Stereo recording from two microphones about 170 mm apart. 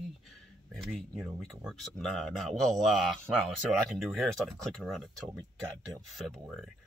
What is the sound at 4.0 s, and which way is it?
Speech, centre (ahead or behind).